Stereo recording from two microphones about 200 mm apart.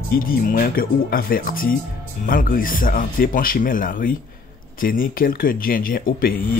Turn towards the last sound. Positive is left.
turn(degrees=45)  # may be behind; listen again after turning